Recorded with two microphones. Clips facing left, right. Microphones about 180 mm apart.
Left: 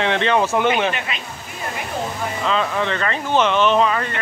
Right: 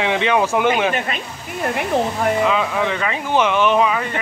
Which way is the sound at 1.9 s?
75° right (ahead or behind).